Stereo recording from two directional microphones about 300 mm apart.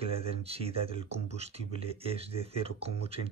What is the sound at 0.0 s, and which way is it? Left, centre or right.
Speech, centre.